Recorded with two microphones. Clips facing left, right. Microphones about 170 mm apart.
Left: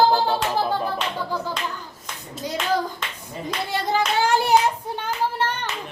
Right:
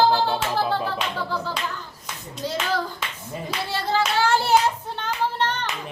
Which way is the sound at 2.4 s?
15° left (ahead or behind).